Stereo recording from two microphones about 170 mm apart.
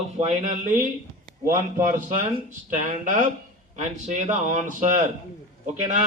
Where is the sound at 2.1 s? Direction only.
45° right (ahead or behind).